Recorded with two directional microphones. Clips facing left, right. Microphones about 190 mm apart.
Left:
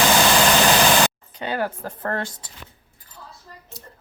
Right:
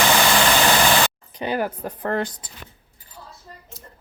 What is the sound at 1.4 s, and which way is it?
Speech, 15° right (ahead or behind).